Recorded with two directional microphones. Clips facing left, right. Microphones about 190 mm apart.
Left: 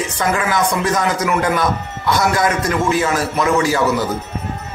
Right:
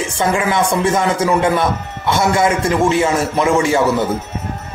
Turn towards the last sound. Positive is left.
turn(degrees=-25)  # may be behind; listen again after turning